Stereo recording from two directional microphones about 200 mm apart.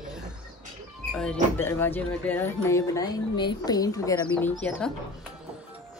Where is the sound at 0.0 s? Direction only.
5° right (ahead or behind).